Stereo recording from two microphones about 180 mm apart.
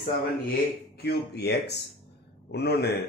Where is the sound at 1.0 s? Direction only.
65° left (ahead or behind).